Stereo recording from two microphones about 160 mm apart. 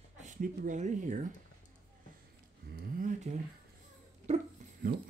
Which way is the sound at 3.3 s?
40° right (ahead or behind).